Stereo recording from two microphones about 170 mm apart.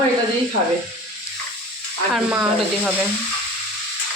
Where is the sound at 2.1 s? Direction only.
5° right (ahead or behind).